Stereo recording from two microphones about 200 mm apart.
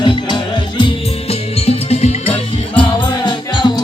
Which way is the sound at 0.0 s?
20° left (ahead or behind).